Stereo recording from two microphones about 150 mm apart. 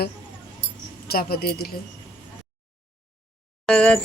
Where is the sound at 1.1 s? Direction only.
90° left.